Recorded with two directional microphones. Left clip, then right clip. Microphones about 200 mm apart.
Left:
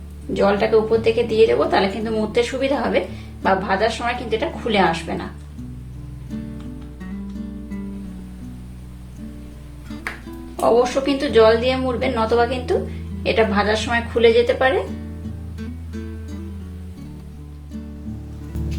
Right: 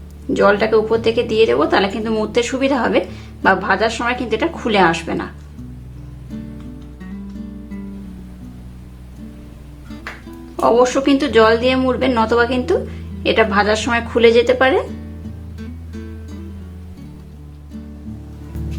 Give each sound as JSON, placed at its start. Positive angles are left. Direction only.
{"t": 0.3, "sound": "a woman's voice", "side_deg": -30}
{"t": 6.3, "sound": "music", "side_deg": 0}
{"t": 10.6, "sound": "a woman's voice", "side_deg": -25}
{"t": 14.8, "sound": "music", "side_deg": 0}